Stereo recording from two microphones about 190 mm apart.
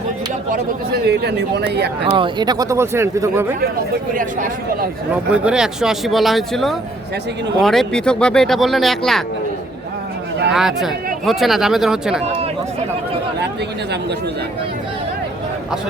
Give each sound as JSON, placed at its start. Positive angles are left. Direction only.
{"t": 0.5, "sound": "speech", "side_deg": -55}
{"t": 2.0, "sound": "speech", "side_deg": -25}
{"t": 4.2, "sound": "speech", "side_deg": -45}
{"t": 5.3, "sound": "speech", "side_deg": -5}
{"t": 10.5, "sound": "speech", "side_deg": 0}